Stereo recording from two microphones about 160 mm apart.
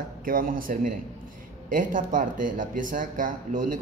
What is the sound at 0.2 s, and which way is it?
Speech, 60° right (ahead or behind).